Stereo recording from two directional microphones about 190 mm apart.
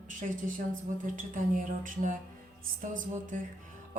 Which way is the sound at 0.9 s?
45° right (ahead or behind).